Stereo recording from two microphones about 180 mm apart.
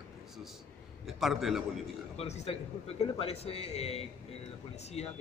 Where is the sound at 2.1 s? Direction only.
35° left (ahead or behind).